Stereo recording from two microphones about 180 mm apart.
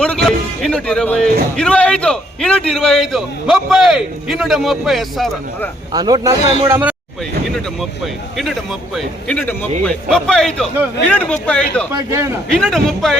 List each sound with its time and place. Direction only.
0.6 s a man's voice: 5° left (ahead or behind)
5.9 s a man's voice: 25° right (ahead or behind)
7.5 s a man's voice: centre (ahead or behind)
11.9 s a man's voice: 15° right (ahead or behind)
12.5 s a man's voice: 5° left (ahead or behind)